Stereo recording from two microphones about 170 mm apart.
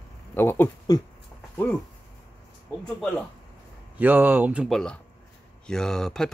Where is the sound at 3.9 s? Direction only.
10° right (ahead or behind).